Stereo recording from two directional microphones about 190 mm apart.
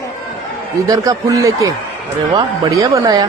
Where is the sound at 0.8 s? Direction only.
20° right (ahead or behind).